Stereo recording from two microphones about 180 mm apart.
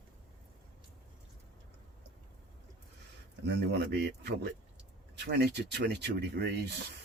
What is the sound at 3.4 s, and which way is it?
Speech, 70° right (ahead or behind).